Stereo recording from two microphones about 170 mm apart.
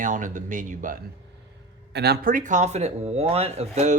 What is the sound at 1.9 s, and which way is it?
Speech, 70° right (ahead or behind).